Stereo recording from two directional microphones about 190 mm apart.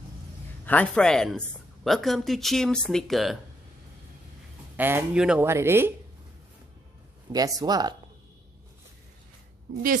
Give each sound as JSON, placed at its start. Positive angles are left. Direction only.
{"t": 0.7, "sound": "speech", "side_deg": 5}
{"t": 4.7, "sound": "speech", "side_deg": -10}
{"t": 7.3, "sound": "speech", "side_deg": -20}